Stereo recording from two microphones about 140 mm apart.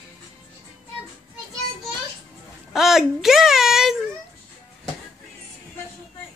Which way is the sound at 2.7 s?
Centre (ahead or behind).